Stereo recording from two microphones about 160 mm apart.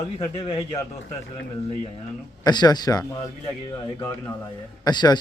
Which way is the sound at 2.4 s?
25° left (ahead or behind).